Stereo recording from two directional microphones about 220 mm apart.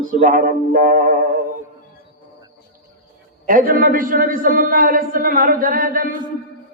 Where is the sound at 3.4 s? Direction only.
40° right (ahead or behind).